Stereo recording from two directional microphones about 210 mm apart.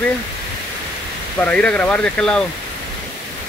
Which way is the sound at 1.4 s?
5° left (ahead or behind).